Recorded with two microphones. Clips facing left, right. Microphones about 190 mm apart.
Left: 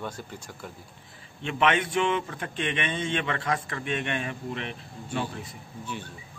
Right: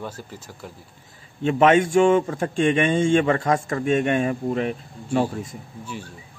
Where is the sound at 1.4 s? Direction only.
40° right (ahead or behind).